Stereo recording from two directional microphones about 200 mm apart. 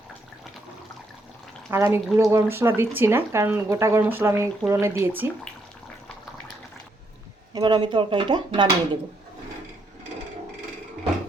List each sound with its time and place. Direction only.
1.7 s speech: 15° right (ahead or behind)
7.5 s speech: 20° right (ahead or behind)